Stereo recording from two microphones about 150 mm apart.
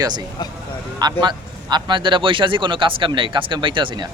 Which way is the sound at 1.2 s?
30° right (ahead or behind).